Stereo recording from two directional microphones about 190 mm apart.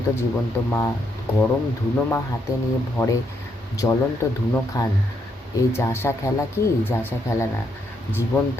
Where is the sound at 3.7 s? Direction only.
20° left (ahead or behind).